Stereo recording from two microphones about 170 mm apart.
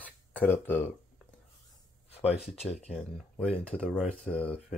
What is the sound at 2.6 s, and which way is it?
Speech, 40° left (ahead or behind).